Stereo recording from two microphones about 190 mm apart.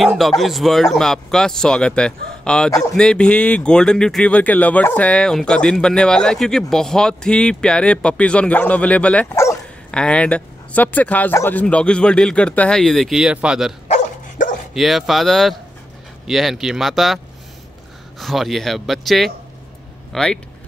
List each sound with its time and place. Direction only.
0.0 s speech: centre (ahead or behind)
13.8 s dog: 40° left (ahead or behind)
14.7 s speech: centre (ahead or behind)
18.2 s speech: centre (ahead or behind)